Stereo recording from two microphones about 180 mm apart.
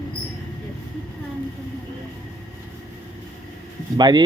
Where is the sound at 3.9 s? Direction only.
25° right (ahead or behind).